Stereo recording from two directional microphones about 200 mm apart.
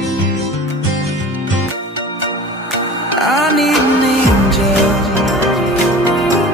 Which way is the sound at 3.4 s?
Centre (ahead or behind).